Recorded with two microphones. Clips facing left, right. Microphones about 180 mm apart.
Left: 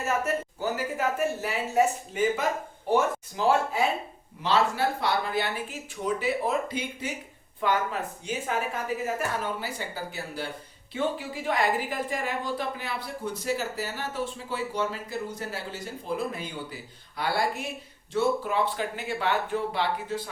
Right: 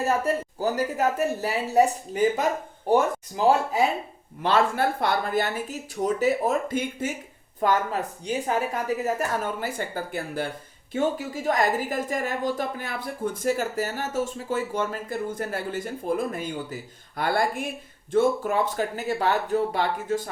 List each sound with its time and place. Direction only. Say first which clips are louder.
0.0 s a woman's voice: right 4 dB; 35° right (ahead or behind)
4.4 s a woman's voice: right 3 dB; 55° right (ahead or behind)
10.9 s a woman's voice: right 4 dB; 45° right (ahead or behind)